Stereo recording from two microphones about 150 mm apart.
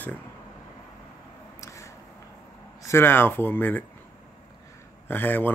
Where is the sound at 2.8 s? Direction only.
15° left (ahead or behind).